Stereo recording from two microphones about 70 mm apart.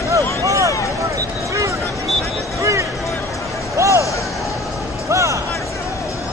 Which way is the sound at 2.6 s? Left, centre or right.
Right.